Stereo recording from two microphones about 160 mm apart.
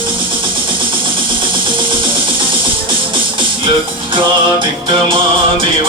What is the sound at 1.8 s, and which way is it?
Music, 30° right (ahead or behind).